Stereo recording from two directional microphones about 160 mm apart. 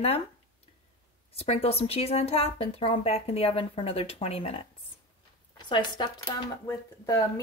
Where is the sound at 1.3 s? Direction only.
40° left (ahead or behind).